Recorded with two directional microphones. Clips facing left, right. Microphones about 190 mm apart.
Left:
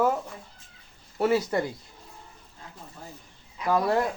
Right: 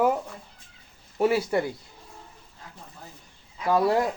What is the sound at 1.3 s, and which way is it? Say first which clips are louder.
Speech: left 1 dB; 5° right (ahead or behind).